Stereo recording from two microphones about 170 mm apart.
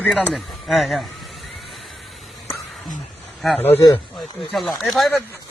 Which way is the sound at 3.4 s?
Centre (ahead or behind).